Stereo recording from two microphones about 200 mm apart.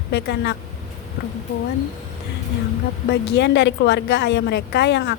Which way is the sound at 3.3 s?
60° left (ahead or behind).